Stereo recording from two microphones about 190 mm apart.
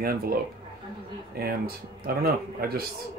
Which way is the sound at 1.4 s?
50° right (ahead or behind).